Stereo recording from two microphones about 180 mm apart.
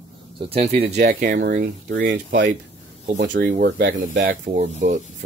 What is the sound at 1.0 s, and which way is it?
Speech, 50° right (ahead or behind).